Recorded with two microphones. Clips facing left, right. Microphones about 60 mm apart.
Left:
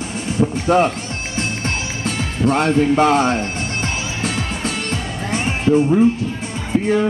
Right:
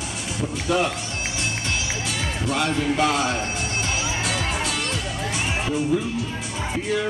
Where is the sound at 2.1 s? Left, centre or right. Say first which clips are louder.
Left 11 dB; left.